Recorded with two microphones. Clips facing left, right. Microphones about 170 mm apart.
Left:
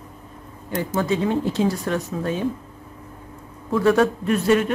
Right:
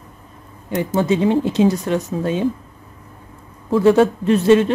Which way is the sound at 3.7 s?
25° right (ahead or behind).